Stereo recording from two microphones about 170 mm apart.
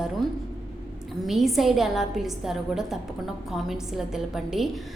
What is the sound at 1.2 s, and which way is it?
A woman's voice, centre (ahead or behind).